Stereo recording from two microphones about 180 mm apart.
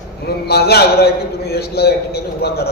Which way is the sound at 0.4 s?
65° left (ahead or behind).